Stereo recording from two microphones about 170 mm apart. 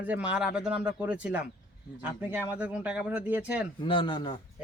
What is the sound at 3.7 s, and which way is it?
Speech, 30° left (ahead or behind).